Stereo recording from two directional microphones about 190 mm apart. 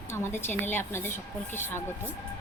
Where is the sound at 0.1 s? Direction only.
10° left (ahead or behind).